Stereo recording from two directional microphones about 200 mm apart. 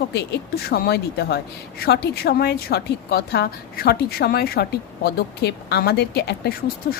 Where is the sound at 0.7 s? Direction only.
55° left (ahead or behind).